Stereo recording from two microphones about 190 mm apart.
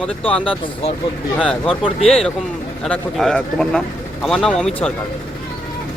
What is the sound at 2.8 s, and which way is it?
Speech, centre (ahead or behind).